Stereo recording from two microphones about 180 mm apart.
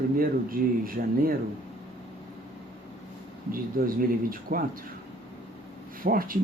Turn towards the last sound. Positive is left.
turn(degrees=-50)  # may be behind; listen again after turning